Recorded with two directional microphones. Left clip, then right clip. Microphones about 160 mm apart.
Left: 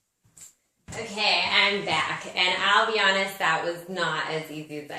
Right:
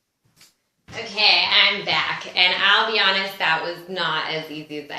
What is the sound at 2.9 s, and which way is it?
Speech, centre (ahead or behind).